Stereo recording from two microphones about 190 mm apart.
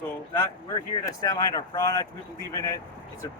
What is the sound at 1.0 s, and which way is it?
Speech, 15° left (ahead or behind).